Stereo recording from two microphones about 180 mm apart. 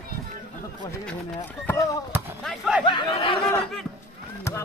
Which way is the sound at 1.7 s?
20° left (ahead or behind).